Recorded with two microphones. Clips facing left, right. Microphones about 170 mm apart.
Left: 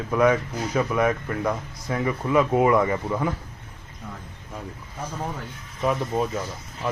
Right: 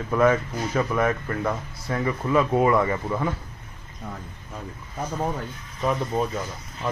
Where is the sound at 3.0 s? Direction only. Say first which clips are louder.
Left 1 dB; centre (ahead or behind).